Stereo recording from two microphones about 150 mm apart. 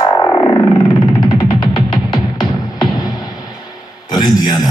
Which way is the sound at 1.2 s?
30° left (ahead or behind).